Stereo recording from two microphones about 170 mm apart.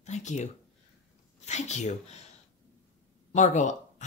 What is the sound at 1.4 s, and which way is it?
Speech, 40° left (ahead or behind).